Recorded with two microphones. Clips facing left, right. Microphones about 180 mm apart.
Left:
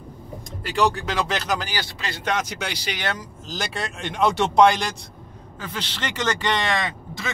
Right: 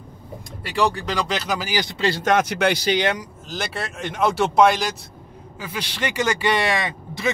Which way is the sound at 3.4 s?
Centre (ahead or behind).